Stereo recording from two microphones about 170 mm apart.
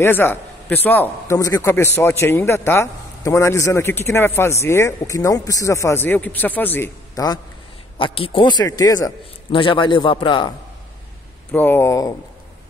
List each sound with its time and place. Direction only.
0.0 s a man's voice: 10° left (ahead or behind)
8.0 s a man's voice: 30° left (ahead or behind)
11.5 s a man's voice: 10° left (ahead or behind)